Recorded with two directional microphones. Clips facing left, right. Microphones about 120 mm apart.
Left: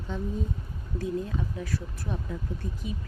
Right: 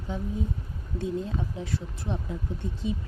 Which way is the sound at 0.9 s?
25° right (ahead or behind).